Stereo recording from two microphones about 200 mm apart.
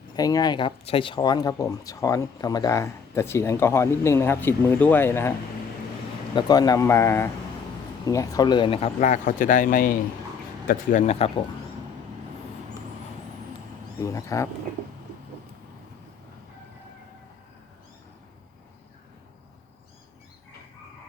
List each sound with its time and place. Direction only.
0.2 s speech: 20° left (ahead or behind)
6.3 s speech: 20° left (ahead or behind)
14.0 s speech: 15° left (ahead or behind)